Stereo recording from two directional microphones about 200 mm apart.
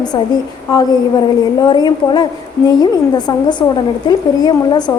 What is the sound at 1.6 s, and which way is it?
A woman's voice, 20° left (ahead or behind).